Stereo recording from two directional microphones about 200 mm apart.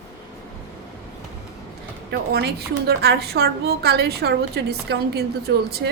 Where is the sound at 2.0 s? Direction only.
55° right (ahead or behind).